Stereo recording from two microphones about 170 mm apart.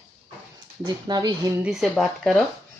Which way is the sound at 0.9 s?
25° right (ahead or behind).